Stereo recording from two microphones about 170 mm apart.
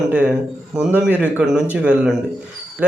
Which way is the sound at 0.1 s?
5° right (ahead or behind).